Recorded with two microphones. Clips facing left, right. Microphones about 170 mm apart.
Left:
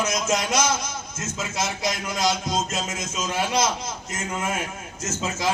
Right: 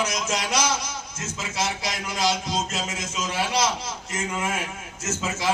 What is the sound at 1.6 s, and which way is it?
Speech, 45° left (ahead or behind).